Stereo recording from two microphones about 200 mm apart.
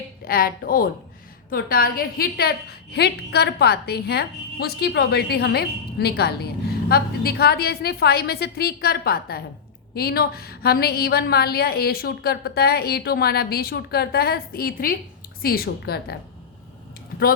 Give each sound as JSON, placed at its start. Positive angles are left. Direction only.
{"t": 0.3, "sound": "a woman's voice", "side_deg": 50}